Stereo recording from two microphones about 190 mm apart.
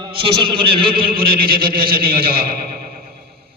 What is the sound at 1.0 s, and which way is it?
A man's voice, 50° right (ahead or behind).